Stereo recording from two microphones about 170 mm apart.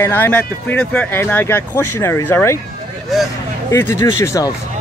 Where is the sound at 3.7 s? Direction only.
15° left (ahead or behind).